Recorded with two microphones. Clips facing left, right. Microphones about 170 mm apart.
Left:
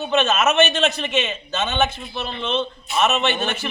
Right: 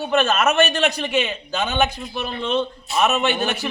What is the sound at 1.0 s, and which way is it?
A man's voice, 10° right (ahead or behind).